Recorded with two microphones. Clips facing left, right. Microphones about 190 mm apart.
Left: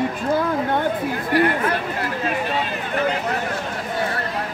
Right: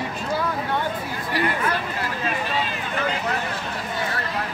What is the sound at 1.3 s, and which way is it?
Speech, 50° left (ahead or behind).